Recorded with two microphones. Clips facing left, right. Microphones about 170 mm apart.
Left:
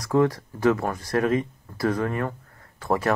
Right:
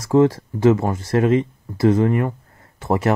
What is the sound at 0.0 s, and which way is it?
Speech, 25° right (ahead or behind).